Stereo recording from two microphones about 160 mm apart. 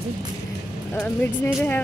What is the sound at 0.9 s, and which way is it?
Speech, 10° left (ahead or behind).